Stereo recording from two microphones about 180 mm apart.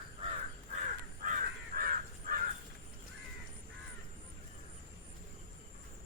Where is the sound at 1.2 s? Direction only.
50° right (ahead or behind).